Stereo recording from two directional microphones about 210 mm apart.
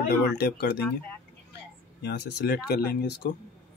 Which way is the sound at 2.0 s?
55° left (ahead or behind).